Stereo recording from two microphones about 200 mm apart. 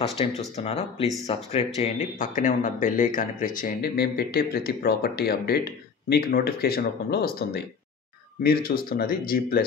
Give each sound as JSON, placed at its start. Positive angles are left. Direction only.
{"t": 0.2, "sound": "speech", "side_deg": 30}